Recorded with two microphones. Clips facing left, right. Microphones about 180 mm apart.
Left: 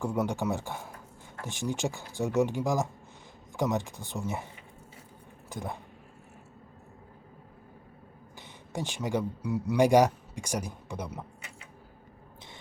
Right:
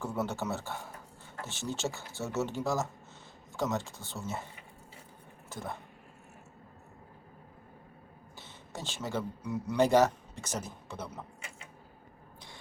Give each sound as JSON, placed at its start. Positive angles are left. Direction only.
{"t": 0.0, "sound": "speech", "side_deg": 15}
{"t": 5.5, "sound": "speech", "side_deg": 15}
{"t": 8.4, "sound": "a man's voice", "side_deg": 15}